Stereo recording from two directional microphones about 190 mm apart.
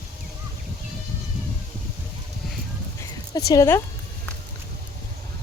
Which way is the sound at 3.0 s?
15° left (ahead or behind).